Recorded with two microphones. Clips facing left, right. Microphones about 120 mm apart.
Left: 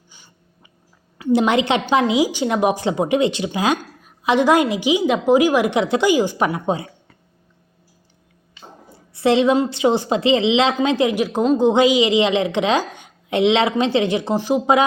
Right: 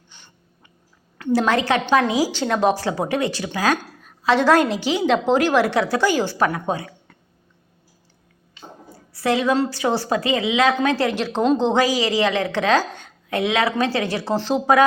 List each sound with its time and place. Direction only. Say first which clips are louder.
0.1 s a sound: even; 10° left (ahead or behind)
1.3 s a woman's voice: left 2 dB; 20° left (ahead or behind)
9.1 s a woman's voice: left 4 dB; 25° left (ahead or behind)